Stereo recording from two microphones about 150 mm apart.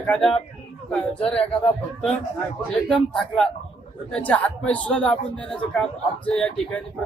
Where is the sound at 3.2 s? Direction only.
5° left (ahead or behind).